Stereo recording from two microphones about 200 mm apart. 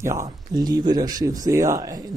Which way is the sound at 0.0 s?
15° right (ahead or behind).